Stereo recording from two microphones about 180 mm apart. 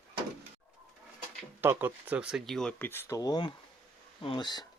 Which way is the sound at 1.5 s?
10° right (ahead or behind).